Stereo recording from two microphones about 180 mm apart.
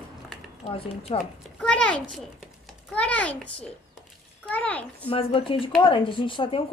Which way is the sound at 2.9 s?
5° left (ahead or behind).